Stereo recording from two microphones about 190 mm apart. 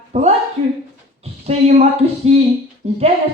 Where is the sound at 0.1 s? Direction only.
35° right (ahead or behind).